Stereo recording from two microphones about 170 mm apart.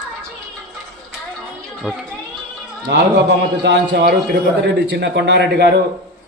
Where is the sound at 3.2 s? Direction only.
85° right.